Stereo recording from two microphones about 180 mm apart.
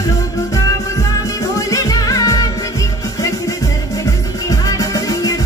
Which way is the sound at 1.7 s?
20° left (ahead or behind).